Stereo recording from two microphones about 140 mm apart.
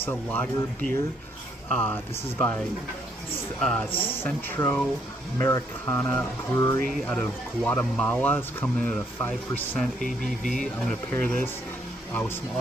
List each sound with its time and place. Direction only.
0.0 s speech: 10° left (ahead or behind)
3.6 s speech: 10° left (ahead or behind)
7.0 s speech: 5° left (ahead or behind)